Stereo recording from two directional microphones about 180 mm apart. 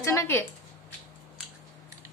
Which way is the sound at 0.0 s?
15° left (ahead or behind).